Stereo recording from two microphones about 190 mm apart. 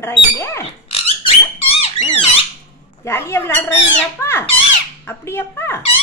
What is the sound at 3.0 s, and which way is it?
Speech, 15° left (ahead or behind).